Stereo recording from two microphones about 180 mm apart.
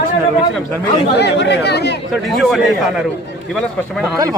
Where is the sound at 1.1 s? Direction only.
70° left (ahead or behind).